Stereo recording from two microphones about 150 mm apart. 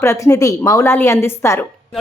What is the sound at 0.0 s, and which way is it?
Speech, 20° left (ahead or behind).